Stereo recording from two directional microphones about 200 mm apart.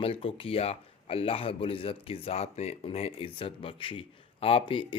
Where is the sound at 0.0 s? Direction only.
25° left (ahead or behind).